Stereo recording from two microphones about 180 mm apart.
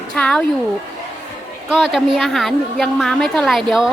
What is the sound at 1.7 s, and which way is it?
A woman's voice, centre (ahead or behind).